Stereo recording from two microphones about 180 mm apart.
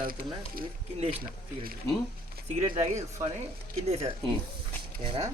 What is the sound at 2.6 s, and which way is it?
Speech, 40° right (ahead or behind).